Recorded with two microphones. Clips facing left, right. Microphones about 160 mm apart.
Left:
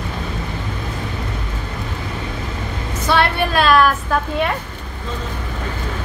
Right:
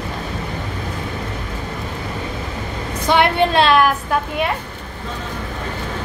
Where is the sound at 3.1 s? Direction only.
20° right (ahead or behind).